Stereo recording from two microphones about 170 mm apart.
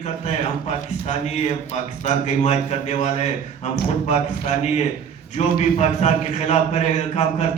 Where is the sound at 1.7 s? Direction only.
45° left (ahead or behind).